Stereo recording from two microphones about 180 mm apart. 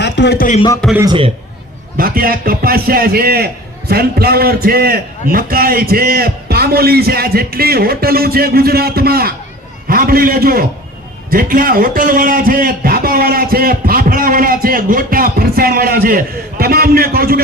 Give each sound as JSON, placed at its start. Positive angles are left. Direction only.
{"t": 0.0, "sound": "music", "side_deg": 70}
{"t": 2.0, "sound": "a man's voice", "side_deg": -55}